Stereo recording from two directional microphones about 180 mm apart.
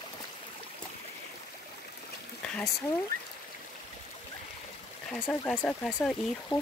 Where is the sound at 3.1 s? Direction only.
50° right (ahead or behind).